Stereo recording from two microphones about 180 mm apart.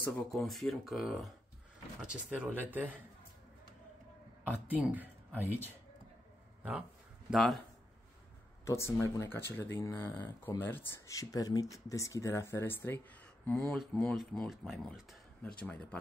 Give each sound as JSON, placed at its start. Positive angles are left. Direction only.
{"t": 0.3, "sound": "speech", "side_deg": 0}
{"t": 4.6, "sound": "speech", "side_deg": -10}
{"t": 7.2, "sound": "speech", "side_deg": 0}
{"t": 8.6, "sound": "speech", "side_deg": 15}
{"t": 13.5, "sound": "speech", "side_deg": 0}